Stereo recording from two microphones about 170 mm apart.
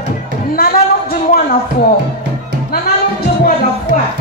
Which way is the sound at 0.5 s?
60° left (ahead or behind).